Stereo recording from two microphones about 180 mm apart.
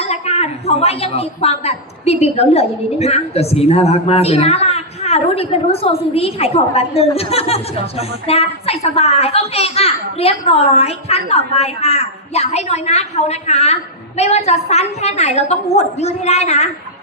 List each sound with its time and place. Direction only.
0.0 s a woman's voice: 35° left (ahead or behind)